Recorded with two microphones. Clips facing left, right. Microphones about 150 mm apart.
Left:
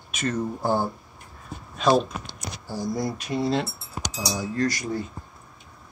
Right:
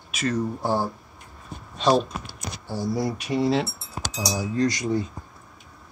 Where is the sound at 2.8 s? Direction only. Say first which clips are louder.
Right 2 dB; 10° right (ahead or behind).